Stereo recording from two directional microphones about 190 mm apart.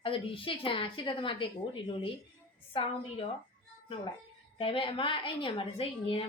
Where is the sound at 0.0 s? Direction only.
30° left (ahead or behind).